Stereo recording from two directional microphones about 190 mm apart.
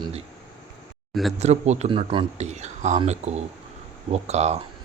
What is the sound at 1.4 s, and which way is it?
Speech, 35° right (ahead or behind).